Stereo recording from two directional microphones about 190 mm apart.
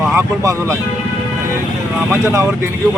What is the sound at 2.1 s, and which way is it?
Speech, 15° right (ahead or behind).